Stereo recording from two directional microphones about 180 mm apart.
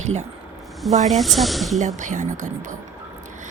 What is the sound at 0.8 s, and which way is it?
Speech, centre (ahead or behind).